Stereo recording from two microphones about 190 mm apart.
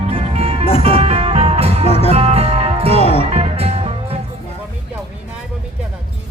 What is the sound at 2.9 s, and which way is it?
Music, 30° left (ahead or behind).